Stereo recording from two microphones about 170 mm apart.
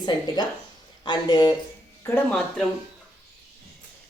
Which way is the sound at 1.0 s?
25° left (ahead or behind).